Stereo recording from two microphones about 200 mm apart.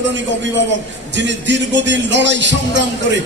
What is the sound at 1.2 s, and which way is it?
A man's voice, 65° right (ahead or behind).